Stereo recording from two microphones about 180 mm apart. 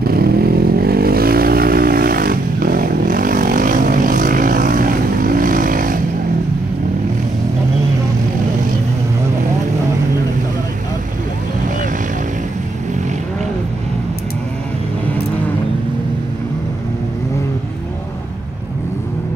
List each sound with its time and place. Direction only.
0.0 s vehicle: 60° right (ahead or behind)